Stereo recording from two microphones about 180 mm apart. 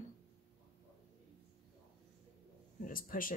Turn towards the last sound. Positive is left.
turn(degrees=50)  # may be behind; listen again after turning